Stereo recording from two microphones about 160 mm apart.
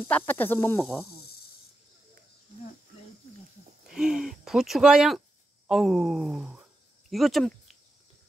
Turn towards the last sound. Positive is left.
turn(degrees=0)  # may be behind; listen again after turning